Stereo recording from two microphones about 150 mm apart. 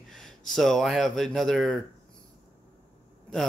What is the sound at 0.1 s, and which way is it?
Speech, 5° left (ahead or behind).